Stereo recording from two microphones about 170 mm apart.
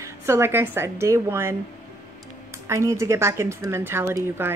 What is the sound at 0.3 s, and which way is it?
Speech, 15° right (ahead or behind).